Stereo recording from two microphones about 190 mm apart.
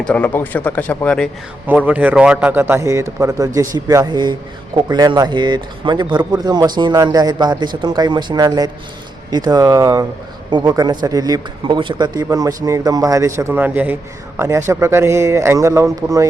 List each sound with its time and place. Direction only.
0.0 s speech: 10° left (ahead or behind)
1.6 s a man's voice: 10° right (ahead or behind)